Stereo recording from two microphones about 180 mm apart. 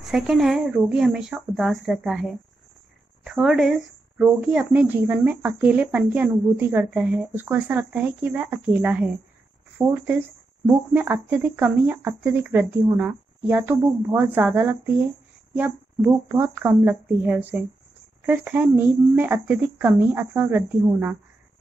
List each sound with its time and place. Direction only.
0.0 s speech: centre (ahead or behind)
16.3 s speech: 10° right (ahead or behind)